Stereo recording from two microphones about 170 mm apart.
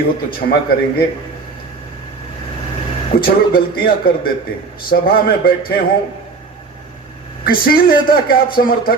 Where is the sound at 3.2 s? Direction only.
60° left (ahead or behind).